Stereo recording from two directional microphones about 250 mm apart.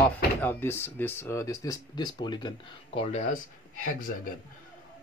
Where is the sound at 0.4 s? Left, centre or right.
Centre; by 3.3 s left.